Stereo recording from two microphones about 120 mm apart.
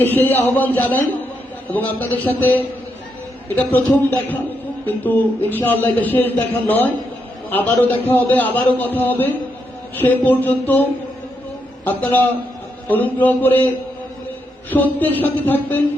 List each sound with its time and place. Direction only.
0.0 s a man's voice: 15° left (ahead or behind)
11.9 s a man's voice: 15° left (ahead or behind)